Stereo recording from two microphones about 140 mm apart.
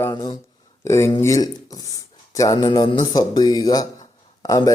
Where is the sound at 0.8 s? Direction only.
20° left (ahead or behind).